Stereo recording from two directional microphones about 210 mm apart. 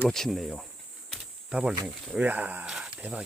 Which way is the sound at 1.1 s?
5° right (ahead or behind).